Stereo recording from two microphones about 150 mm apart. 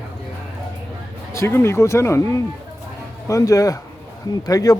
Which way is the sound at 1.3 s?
15° left (ahead or behind).